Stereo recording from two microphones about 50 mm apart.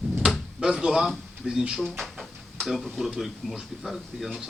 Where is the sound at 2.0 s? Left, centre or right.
Centre.